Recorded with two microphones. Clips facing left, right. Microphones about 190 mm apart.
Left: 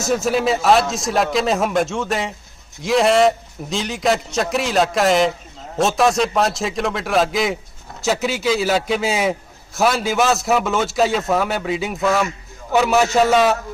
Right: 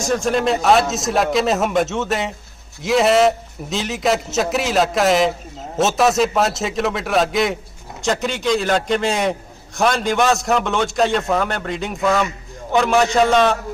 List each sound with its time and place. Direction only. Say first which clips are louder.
0.1 s a man's voice: even; 5° left (ahead or behind)